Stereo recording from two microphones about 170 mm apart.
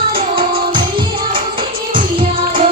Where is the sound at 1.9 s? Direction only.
30° right (ahead or behind).